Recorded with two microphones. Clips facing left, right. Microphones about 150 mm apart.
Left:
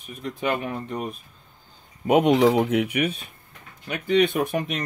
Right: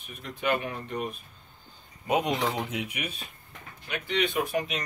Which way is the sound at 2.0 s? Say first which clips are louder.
Left 9 dB; 65° left (ahead or behind).